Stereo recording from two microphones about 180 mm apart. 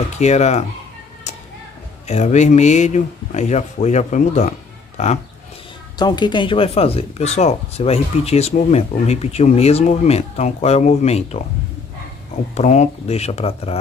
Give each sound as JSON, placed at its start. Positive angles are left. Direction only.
{"t": 0.1, "sound": "speech", "side_deg": 40}
{"t": 2.0, "sound": "speech", "side_deg": 40}
{"t": 5.9, "sound": "speech", "side_deg": 25}
{"t": 12.5, "sound": "speech", "side_deg": 40}